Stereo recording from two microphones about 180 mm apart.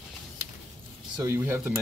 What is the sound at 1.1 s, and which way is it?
Speech, 15° right (ahead or behind).